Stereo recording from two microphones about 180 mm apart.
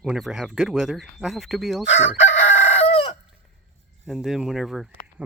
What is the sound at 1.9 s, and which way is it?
Chicken, 40° left (ahead or behind).